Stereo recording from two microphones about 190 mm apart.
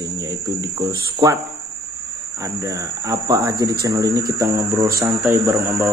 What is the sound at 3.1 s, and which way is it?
Speech, 20° right (ahead or behind).